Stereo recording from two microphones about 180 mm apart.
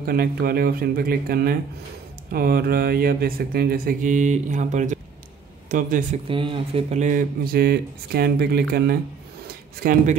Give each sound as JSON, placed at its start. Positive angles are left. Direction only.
{"t": 0.0, "sound": "speech", "side_deg": -55}
{"t": 6.2, "sound": "speech", "side_deg": -30}